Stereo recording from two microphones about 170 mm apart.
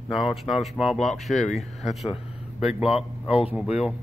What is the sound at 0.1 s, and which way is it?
Speech, centre (ahead or behind).